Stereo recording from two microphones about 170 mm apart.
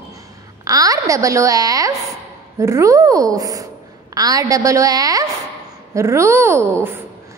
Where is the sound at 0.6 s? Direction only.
20° right (ahead or behind).